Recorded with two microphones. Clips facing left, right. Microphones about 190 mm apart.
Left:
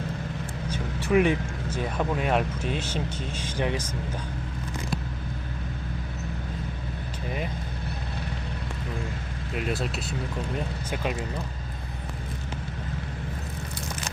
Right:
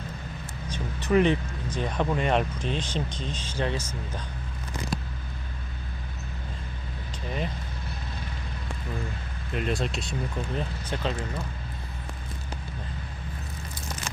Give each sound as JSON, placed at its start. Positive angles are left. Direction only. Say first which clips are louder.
{"t": 0.7, "sound": "speech", "louder": "even", "side_deg": 10}
{"t": 9.5, "sound": "speech", "louder": "right 1 dB", "side_deg": 5}